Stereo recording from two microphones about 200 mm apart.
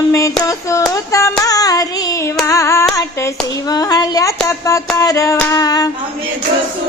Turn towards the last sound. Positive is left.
turn(degrees=20)  # may be behind; listen again after turning